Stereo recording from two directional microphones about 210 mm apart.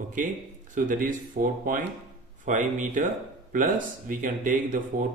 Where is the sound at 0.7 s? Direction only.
40° right (ahead or behind).